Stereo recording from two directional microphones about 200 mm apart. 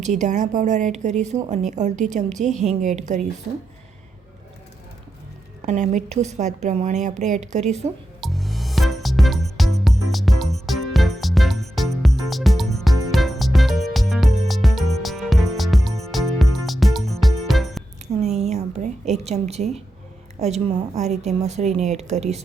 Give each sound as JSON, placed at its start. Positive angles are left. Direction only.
{"t": 0.0, "sound": "a woman's voice", "side_deg": -35}
{"t": 5.6, "sound": "a woman's voice", "side_deg": -35}
{"t": 8.2, "sound": "music", "side_deg": 0}
{"t": 18.1, "sound": "a sound", "side_deg": -35}
{"t": 20.4, "sound": "a woman's voice", "side_deg": -35}